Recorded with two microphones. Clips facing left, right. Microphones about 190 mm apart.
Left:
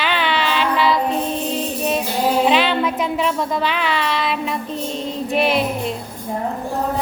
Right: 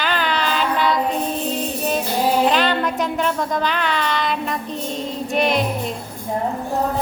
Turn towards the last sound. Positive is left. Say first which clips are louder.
# left 1 dB
turn(degrees=0)  # may be behind; listen again after turning